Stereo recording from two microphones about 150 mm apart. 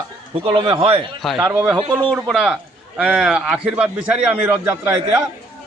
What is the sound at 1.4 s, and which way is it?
A man's voice, 15° right (ahead or behind).